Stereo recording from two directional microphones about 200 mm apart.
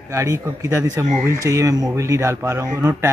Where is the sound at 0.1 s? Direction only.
15° right (ahead or behind).